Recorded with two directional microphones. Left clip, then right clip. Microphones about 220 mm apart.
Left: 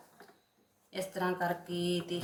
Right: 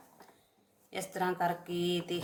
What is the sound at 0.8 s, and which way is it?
Speech, 45° right (ahead or behind).